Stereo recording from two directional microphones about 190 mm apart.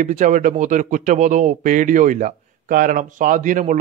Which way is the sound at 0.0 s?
40° right (ahead or behind).